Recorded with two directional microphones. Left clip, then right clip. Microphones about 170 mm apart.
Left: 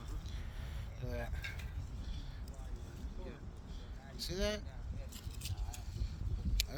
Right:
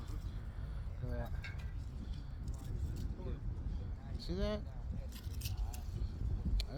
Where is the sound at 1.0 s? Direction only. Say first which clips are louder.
Left 2 dB; 65° left (ahead or behind).